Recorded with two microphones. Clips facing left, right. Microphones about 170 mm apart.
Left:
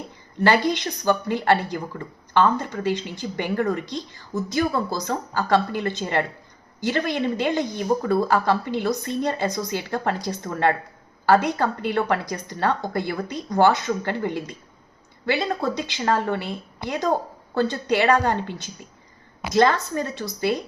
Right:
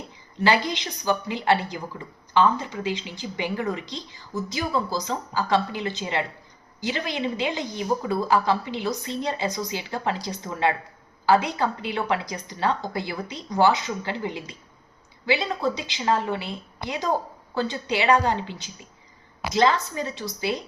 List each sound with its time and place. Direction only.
0.3 s speech: 55° left (ahead or behind)